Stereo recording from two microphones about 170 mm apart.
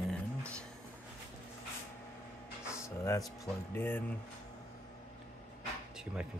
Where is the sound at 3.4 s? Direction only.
10° left (ahead or behind).